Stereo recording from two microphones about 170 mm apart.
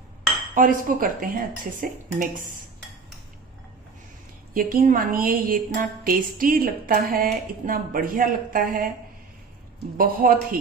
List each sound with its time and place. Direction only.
0.6 s speech: 55° right (ahead or behind)
4.6 s a woman's voice: 55° right (ahead or behind)
9.9 s a woman's voice: 55° right (ahead or behind)